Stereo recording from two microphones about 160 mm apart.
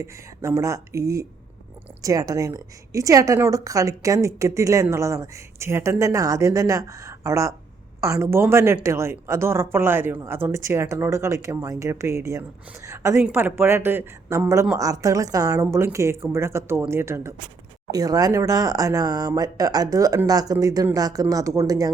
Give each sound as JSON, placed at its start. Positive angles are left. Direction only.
{"t": 0.0, "sound": "a woman's voice", "side_deg": -20}